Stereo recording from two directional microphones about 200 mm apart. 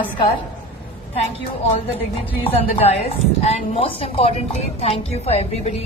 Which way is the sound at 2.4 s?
30° left (ahead or behind).